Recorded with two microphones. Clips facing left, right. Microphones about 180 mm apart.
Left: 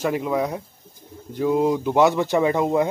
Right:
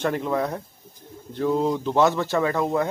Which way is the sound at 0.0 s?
5° left (ahead or behind).